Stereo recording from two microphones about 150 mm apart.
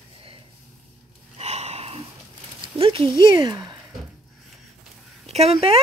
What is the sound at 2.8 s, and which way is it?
Speech, 35° right (ahead or behind).